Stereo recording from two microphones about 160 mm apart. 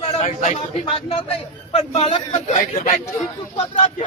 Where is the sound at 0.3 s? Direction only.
45° left (ahead or behind).